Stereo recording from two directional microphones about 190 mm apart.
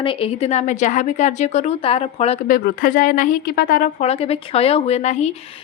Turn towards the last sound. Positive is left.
turn(degrees=35)  # may be behind; listen again after turning